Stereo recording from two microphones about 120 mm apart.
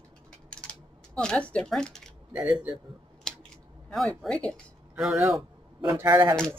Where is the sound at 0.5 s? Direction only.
10° left (ahead or behind).